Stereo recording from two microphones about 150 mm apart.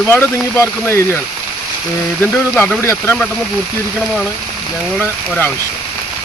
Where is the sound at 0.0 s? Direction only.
15° left (ahead or behind).